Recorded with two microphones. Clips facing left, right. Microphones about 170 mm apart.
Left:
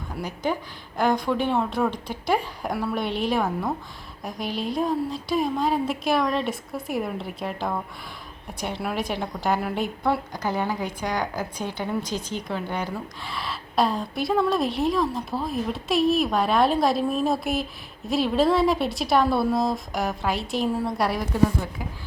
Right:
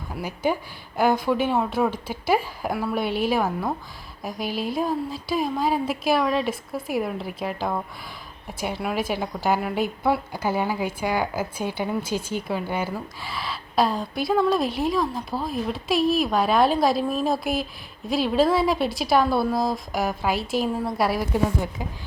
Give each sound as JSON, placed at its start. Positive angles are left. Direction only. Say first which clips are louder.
{"t": 0.2, "sound": "a woman's voice", "louder": "right 2 dB", "side_deg": -10}
{"t": 21.3, "sound": "a woman's voice", "louder": "left 1 dB", "side_deg": -15}